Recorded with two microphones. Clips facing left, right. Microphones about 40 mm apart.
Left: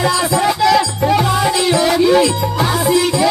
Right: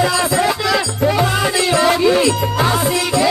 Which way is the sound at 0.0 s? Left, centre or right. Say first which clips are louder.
Even; centre.